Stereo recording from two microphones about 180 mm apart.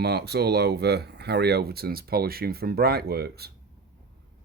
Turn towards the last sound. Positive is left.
turn(degrees=-60)  # may be behind; listen again after turning